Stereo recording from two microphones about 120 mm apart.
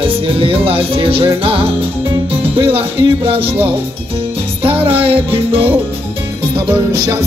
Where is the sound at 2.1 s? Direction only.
40° right (ahead or behind).